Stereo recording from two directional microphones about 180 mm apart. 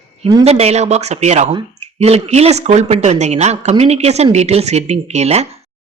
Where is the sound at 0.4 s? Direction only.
35° right (ahead or behind).